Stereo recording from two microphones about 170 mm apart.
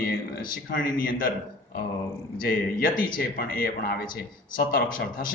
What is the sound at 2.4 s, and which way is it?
A man's voice, 60° left (ahead or behind).